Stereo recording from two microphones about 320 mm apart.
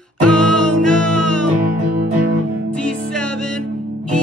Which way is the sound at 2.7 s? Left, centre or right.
Centre.